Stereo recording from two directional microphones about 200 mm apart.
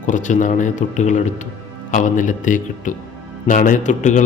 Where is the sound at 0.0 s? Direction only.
40° left (ahead or behind).